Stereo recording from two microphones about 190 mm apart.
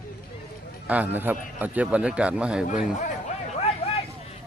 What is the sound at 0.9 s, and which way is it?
A man's voice, 10° right (ahead or behind).